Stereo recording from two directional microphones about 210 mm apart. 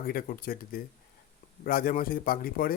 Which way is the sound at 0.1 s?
45° left (ahead or behind).